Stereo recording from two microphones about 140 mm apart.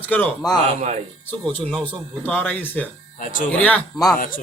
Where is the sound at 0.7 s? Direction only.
60° right (ahead or behind).